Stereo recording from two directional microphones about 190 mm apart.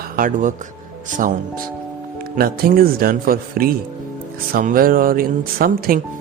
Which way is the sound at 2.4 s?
50° right (ahead or behind).